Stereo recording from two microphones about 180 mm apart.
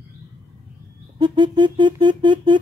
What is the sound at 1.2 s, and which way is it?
Music, 25° right (ahead or behind).